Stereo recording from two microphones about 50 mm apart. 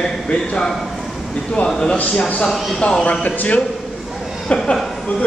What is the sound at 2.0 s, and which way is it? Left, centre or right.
Speech, left.